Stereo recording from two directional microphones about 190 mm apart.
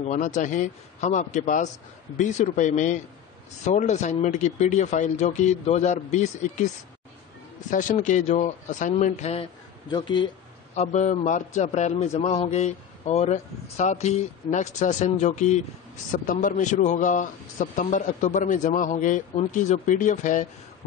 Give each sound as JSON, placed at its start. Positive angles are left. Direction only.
{"t": 0.0, "sound": "a man's voice", "side_deg": 40}
{"t": 7.7, "sound": "a man's voice", "side_deg": 40}
{"t": 10.7, "sound": "a man's voice", "side_deg": 40}